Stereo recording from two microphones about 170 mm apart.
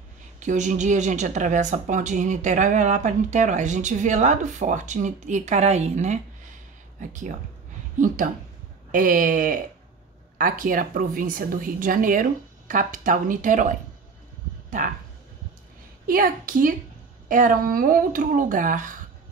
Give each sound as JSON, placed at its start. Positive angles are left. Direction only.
{"t": 0.4, "sound": "a woman's voice", "side_deg": -45}
{"t": 8.9, "sound": "a woman's voice", "side_deg": -55}
{"t": 16.1, "sound": "a woman's voice", "side_deg": -55}